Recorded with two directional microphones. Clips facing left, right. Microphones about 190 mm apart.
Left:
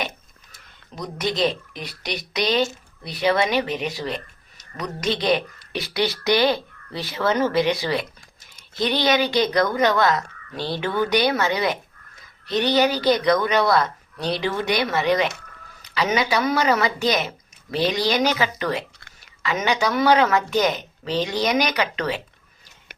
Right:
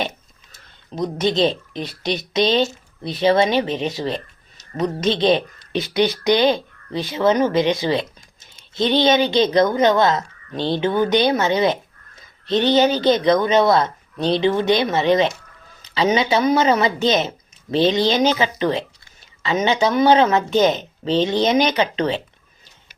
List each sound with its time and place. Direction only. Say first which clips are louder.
0.5 s a woman's voice: right 8 dB; 25° right (ahead or behind)